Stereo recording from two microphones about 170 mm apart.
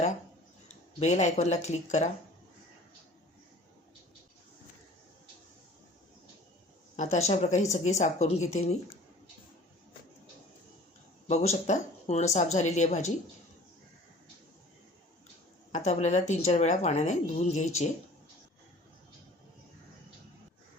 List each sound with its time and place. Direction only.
0.9 s speech: 45° left (ahead or behind)
6.9 s speech: 45° left (ahead or behind)
11.3 s speech: 40° left (ahead or behind)
15.7 s speech: 45° left (ahead or behind)